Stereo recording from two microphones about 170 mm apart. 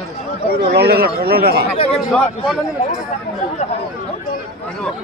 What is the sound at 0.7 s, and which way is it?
Speech, 65° right (ahead or behind).